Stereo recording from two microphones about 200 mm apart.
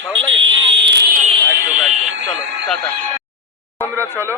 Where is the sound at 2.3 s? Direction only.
Centre (ahead or behind).